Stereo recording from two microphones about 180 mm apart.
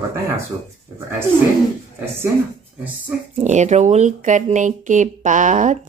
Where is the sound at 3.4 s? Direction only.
40° right (ahead or behind).